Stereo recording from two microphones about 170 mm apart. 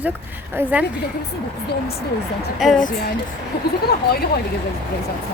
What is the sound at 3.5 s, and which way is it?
Speech, 70° left (ahead or behind).